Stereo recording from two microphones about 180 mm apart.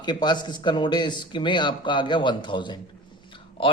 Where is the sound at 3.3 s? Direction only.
30° left (ahead or behind).